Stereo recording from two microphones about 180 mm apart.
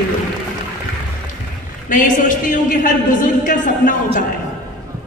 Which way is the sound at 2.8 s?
50° left (ahead or behind).